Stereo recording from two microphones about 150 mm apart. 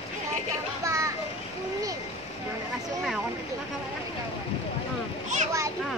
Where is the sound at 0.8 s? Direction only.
20° right (ahead or behind).